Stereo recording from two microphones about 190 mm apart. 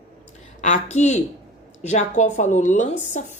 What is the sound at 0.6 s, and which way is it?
A woman's voice, 40° left (ahead or behind).